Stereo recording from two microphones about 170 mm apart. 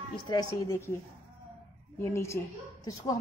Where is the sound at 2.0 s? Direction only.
15° left (ahead or behind).